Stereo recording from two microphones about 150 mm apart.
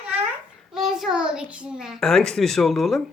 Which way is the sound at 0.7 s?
Centre (ahead or behind).